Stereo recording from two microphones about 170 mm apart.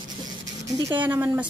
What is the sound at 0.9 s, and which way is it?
Speech, 10° right (ahead or behind).